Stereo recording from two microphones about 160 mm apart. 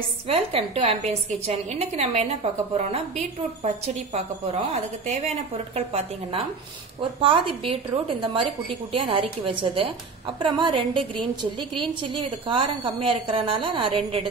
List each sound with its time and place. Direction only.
0.3 s a woman's voice: 35° right (ahead or behind)